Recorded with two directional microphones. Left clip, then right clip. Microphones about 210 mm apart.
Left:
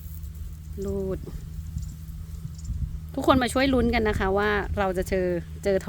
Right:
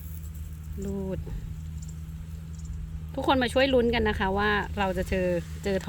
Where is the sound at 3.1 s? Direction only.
60° left (ahead or behind).